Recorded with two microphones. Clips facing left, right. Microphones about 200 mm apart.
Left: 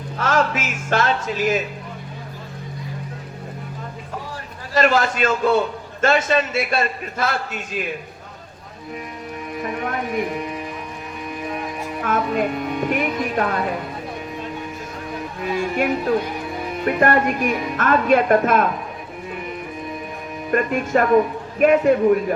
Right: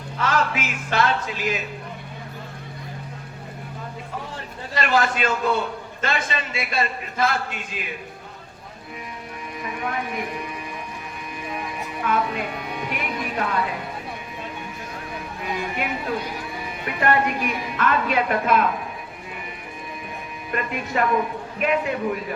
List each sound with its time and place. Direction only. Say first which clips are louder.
0.2 s speech: left 3 dB; 45° left (ahead or behind)
4.7 s a man's voice: left 4 dB; 45° left (ahead or behind)
9.6 s speech: left 3 dB; 45° left (ahead or behind)
12.0 s a man's voice: left 4 dB; 45° left (ahead or behind)
15.5 s a man's voice: left 8 dB; 50° left (ahead or behind)
20.5 s a man's voice: left 8 dB; 45° left (ahead or behind)